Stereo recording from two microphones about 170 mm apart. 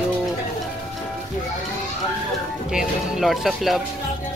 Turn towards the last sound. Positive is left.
turn(degrees=0)  # may be behind; listen again after turning